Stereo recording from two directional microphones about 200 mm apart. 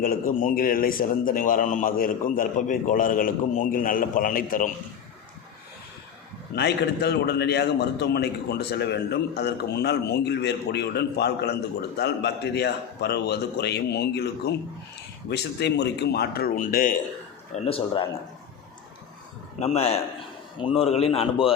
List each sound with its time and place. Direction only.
0.0 s a man's voice: 45° left (ahead or behind)
6.6 s a man's voice: 55° left (ahead or behind)
17.5 s a man's voice: 30° left (ahead or behind)
19.5 s a man's voice: 35° left (ahead or behind)